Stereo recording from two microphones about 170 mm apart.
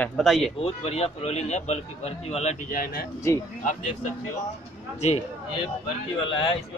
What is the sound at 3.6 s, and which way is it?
Speech, 50° left (ahead or behind).